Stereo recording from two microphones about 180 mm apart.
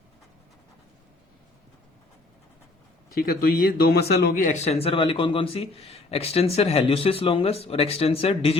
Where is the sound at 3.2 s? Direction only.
55° left (ahead or behind).